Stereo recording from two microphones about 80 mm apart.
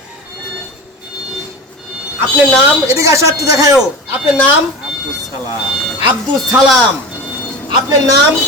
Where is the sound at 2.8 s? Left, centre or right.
Right.